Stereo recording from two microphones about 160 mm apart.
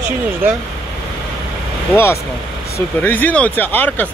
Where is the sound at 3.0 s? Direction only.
10° left (ahead or behind).